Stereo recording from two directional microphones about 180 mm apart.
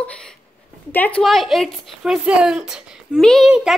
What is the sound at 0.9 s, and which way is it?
A woman's voice, 10° left (ahead or behind).